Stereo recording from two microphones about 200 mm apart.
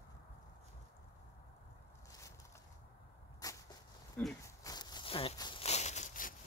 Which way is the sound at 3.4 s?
20° left (ahead or behind).